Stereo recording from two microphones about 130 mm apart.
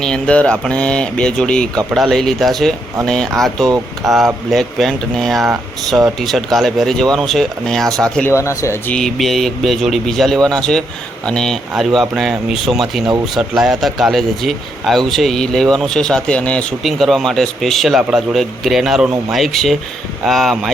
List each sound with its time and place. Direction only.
0.0 s speech: 5° left (ahead or behind)
8.3 s speech: 20° left (ahead or behind)
8.9 s speech: 5° left (ahead or behind)